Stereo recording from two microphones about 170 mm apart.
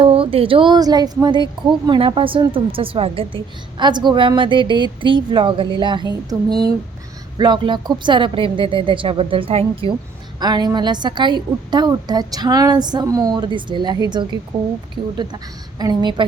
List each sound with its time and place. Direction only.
0.0 s a woman's voice: 35° right (ahead or behind)
7.3 s a woman's voice: 25° right (ahead or behind)
15.8 s a woman's voice: 25° right (ahead or behind)